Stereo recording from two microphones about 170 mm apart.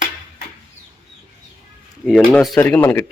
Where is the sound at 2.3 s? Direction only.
5° left (ahead or behind).